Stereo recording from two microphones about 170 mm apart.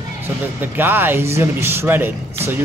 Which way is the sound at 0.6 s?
10° right (ahead or behind).